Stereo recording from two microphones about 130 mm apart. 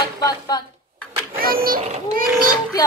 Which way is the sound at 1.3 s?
90° right.